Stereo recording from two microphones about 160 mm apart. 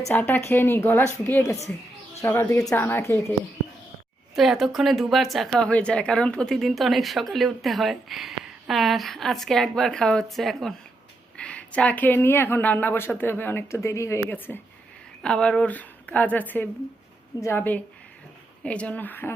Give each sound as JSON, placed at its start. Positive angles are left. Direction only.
{"t": 0.1, "sound": "speech", "side_deg": 10}
{"t": 4.4, "sound": "speech", "side_deg": 0}